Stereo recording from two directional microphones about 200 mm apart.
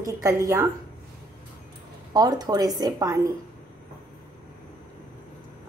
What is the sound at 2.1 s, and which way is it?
A woman's voice, 20° right (ahead or behind).